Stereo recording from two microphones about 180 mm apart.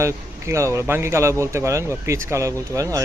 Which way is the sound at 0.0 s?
15° right (ahead or behind).